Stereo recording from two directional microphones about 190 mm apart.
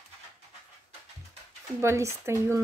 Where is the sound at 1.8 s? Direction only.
15° right (ahead or behind).